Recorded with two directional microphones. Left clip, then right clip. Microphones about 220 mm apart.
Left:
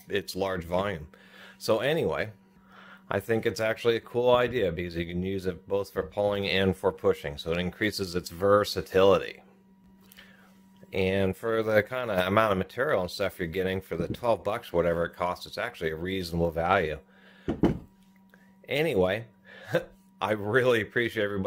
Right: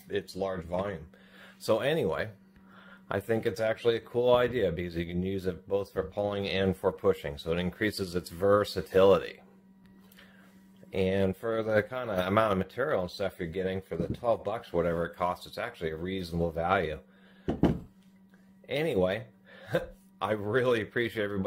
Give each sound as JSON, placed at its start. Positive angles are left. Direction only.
{"t": 0.1, "sound": "speech", "side_deg": 35}
{"t": 1.4, "sound": "speech", "side_deg": 20}
{"t": 10.9, "sound": "speech", "side_deg": 20}
{"t": 18.7, "sound": "speech", "side_deg": 25}